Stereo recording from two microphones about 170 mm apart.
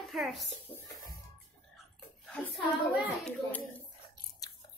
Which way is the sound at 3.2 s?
10° left (ahead or behind).